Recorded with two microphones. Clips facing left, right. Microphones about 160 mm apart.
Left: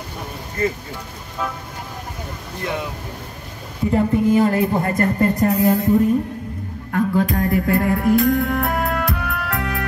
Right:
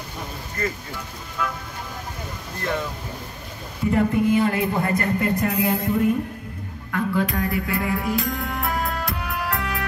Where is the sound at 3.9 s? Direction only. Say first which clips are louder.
Left 3 dB; 40° left (ahead or behind).